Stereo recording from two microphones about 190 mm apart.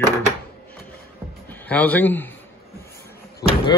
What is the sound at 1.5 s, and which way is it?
Speech, 10° left (ahead or behind).